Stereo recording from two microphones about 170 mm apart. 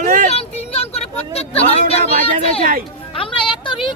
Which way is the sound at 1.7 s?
35° left (ahead or behind).